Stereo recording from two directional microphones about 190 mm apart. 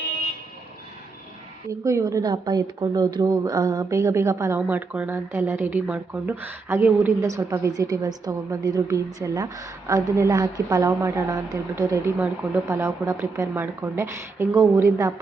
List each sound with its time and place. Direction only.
1.6 s a woman's voice: 15° right (ahead or behind)